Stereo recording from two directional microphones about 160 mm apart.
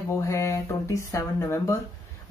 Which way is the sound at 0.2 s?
20° left (ahead or behind).